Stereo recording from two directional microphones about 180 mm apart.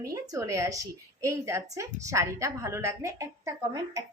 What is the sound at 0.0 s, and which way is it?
A woman's voice, 15° right (ahead or behind).